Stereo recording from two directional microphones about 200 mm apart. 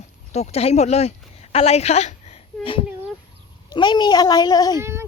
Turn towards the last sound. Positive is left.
turn(degrees=-15)  # may be behind; listen again after turning